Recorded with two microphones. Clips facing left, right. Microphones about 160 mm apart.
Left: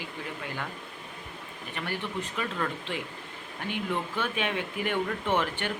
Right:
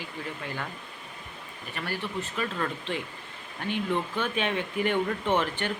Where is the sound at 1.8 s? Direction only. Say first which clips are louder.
Right 1 dB; 15° left (ahead or behind).